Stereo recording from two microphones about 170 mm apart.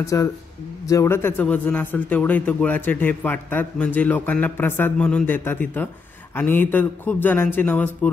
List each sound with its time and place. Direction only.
0.0 s a man's voice: 20° left (ahead or behind)